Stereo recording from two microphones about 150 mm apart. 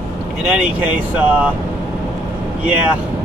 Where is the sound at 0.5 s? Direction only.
10° right (ahead or behind).